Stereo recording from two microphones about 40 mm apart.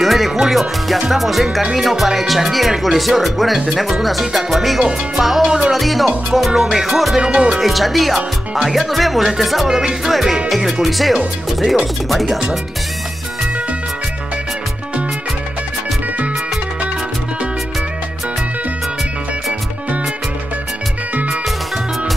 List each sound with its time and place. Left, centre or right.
0.0 s music: centre
0.5 s speech: centre
5.4 s music: centre
5.7 s speech: centre
7.2 s speech: centre
7.6 s speech: centre